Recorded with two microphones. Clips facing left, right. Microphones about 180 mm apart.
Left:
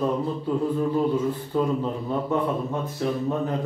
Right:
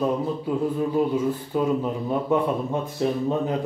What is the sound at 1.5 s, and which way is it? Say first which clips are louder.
A man's voice: even; 15° right (ahead or behind).